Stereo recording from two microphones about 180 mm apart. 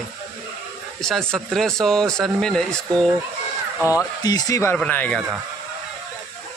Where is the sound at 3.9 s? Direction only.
20° left (ahead or behind).